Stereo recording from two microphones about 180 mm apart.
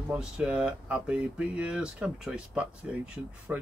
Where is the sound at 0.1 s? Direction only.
5° right (ahead or behind).